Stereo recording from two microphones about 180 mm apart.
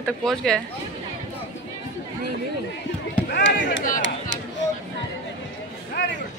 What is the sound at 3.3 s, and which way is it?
Speech, 90° left.